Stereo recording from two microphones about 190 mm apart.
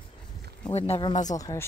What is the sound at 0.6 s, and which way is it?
Speech, 30° left (ahead or behind).